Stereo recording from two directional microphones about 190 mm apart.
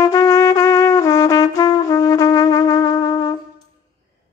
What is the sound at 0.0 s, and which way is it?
Trumpet, 15° left (ahead or behind).